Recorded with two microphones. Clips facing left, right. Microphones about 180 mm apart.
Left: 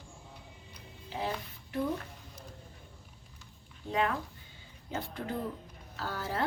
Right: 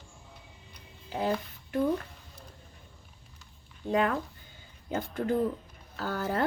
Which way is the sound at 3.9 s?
45° right (ahead or behind).